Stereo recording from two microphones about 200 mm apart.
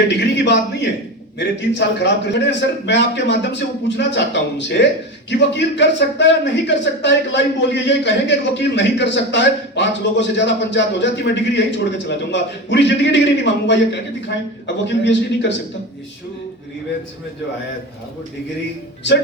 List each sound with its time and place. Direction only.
0.4 s a man's voice: 60° left (ahead or behind)